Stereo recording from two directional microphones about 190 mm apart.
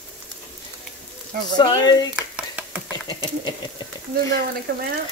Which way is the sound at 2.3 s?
5° right (ahead or behind).